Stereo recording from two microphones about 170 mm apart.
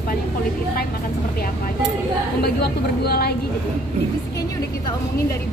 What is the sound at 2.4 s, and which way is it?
Speech, 65° left (ahead or behind).